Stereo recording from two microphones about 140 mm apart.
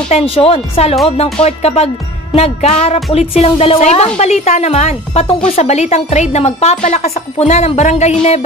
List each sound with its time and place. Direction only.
0.1 s a woman's voice: 40° left (ahead or behind)